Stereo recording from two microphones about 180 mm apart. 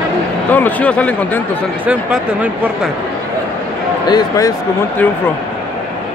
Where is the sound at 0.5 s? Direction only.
10° left (ahead or behind).